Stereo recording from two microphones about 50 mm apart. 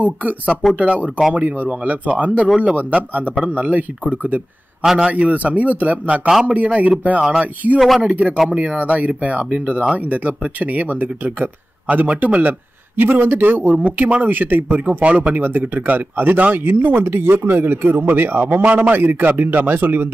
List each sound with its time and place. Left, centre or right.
0.0 s speech: right
4.8 s speech: centre
5.3 s speech: right
7.2 s speech: centre; by 12.1 s right
12.1 s speech: right
12.9 s speech: right